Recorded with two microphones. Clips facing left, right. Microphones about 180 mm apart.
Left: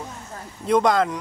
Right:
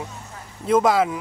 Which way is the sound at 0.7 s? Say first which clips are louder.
Right 1 dB; 5° right (ahead or behind).